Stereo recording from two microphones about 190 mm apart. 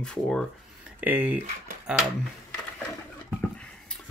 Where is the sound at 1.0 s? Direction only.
10° right (ahead or behind).